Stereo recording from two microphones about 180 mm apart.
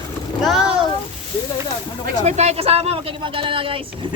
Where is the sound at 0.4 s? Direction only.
5° right (ahead or behind).